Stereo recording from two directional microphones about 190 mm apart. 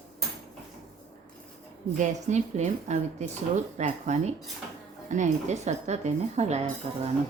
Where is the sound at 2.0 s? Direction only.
40° right (ahead or behind).